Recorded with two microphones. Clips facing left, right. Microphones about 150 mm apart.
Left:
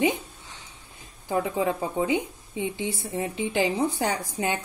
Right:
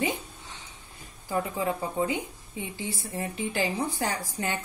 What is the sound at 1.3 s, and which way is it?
A woman's voice, 20° left (ahead or behind).